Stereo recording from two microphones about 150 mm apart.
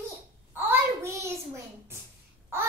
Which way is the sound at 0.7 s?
15° right (ahead or behind).